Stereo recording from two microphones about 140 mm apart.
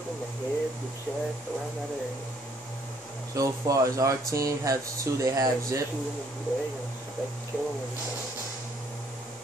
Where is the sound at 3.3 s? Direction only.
25° right (ahead or behind).